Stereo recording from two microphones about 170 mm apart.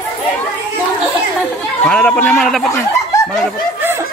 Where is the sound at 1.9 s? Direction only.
5° left (ahead or behind).